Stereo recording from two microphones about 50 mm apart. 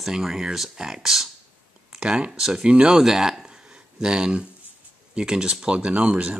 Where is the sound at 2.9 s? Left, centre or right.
Centre; by 6.4 s right.